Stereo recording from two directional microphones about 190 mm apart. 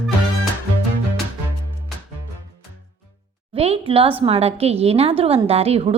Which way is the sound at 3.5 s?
30° right (ahead or behind).